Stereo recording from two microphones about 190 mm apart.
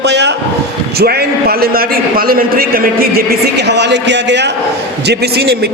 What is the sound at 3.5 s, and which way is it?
A man's voice, 65° right (ahead or behind).